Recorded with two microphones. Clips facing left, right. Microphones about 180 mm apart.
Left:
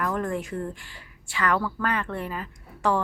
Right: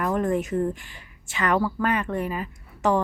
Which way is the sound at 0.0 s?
20° right (ahead or behind).